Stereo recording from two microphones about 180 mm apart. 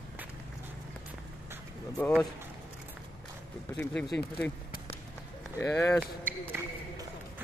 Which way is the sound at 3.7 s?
10° left (ahead or behind).